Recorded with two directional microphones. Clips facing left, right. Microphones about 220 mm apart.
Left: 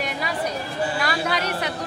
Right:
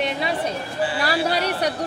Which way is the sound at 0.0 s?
25° right (ahead or behind).